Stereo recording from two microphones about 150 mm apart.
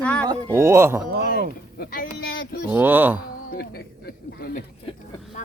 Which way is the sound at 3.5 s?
90° left.